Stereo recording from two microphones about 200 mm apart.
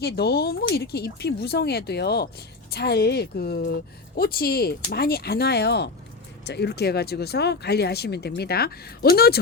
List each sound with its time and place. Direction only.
0.0 s speech: 50° left (ahead or behind)